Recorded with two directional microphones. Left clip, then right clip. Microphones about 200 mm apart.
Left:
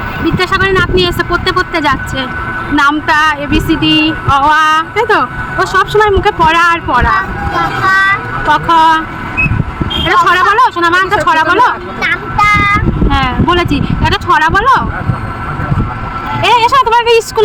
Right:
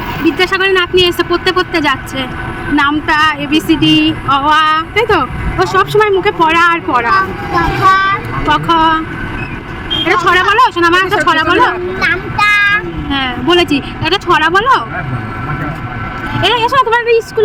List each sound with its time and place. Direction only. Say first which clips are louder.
0.3 s music: left 1 dB; centre (ahead or behind)
8.4 s music: left 3 dB; centre (ahead or behind)
10.1 s speech: left 2 dB; centre (ahead or behind)
16.4 s a woman's voice: left 3 dB; 10° left (ahead or behind); by 17.4 s 25° left (ahead or behind)